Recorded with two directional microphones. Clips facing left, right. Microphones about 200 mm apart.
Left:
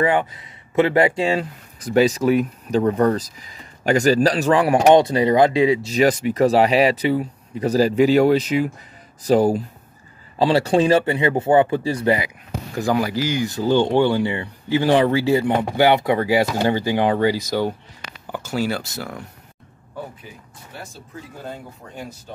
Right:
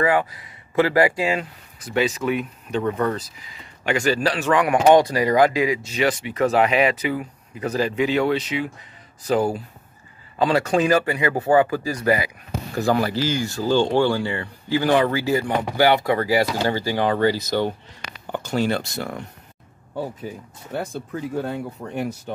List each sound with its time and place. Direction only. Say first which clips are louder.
0.0 s speech: left 1 dB; 25° left (ahead or behind)
12.7 s speech: even; 15° left (ahead or behind)
20.2 s speech: right 8 dB; 55° right (ahead or behind)